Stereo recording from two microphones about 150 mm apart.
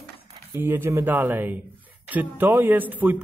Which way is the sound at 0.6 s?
15° right (ahead or behind).